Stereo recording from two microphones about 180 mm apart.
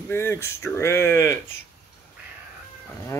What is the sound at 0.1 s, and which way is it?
Speech, 15° left (ahead or behind).